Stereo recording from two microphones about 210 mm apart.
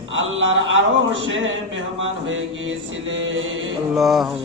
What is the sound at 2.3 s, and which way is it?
Music, 65° right (ahead or behind).